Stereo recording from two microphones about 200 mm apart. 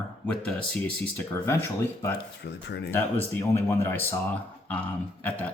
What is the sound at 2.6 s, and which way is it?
Speech, 55° left (ahead or behind).